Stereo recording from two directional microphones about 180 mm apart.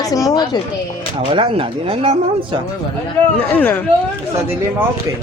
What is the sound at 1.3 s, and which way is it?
Speech, 30° right (ahead or behind).